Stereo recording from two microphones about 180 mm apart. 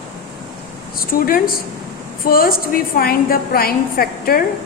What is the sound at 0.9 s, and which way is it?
A woman's voice, 50° left (ahead or behind).